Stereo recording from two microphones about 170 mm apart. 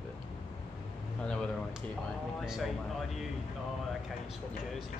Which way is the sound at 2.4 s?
Centre (ahead or behind).